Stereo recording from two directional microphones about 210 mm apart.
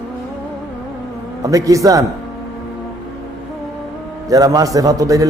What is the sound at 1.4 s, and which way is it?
Speech, 15° right (ahead or behind).